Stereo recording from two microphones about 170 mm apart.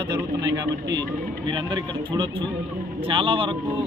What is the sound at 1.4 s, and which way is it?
Speech, 30° right (ahead or behind).